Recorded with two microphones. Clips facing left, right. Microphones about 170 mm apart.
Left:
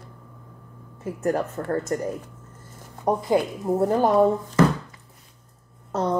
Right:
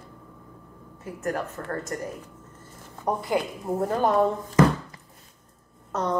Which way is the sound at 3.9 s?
10° left (ahead or behind).